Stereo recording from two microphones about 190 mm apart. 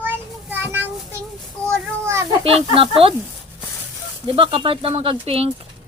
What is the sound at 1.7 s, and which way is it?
Children playing, 15° right (ahead or behind).